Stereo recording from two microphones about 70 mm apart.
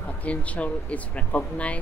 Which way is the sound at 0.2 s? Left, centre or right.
Centre.